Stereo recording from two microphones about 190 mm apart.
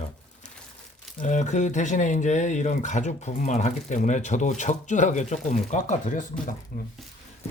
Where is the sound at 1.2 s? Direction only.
40° left (ahead or behind).